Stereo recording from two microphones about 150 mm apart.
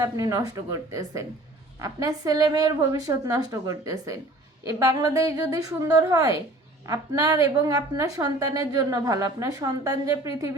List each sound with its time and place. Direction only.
0.0 s a woman's voice: 20° right (ahead or behind)